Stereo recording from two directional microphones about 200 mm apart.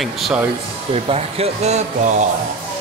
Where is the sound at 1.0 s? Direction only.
30° right (ahead or behind).